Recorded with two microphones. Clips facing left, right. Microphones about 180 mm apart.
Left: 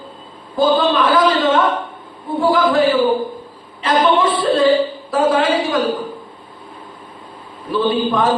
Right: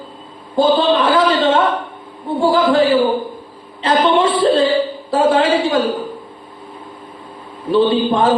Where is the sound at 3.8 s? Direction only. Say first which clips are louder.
Right 1 dB; 30° right (ahead or behind).